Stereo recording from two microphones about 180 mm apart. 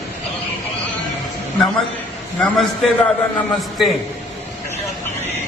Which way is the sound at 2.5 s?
Centre (ahead or behind).